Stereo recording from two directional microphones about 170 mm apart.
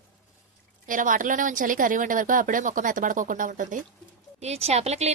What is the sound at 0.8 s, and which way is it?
A woman's voice, 50° right (ahead or behind).